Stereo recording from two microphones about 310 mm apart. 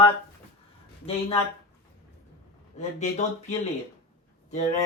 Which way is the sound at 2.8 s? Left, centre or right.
Left.